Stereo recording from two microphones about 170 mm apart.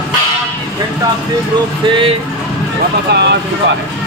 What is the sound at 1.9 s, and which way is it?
Speech, 30° right (ahead or behind).